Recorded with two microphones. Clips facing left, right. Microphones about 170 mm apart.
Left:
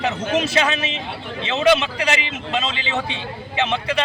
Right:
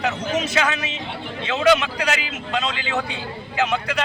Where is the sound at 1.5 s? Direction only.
25° left (ahead or behind).